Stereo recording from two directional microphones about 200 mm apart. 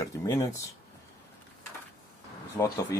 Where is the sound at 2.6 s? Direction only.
20° left (ahead or behind).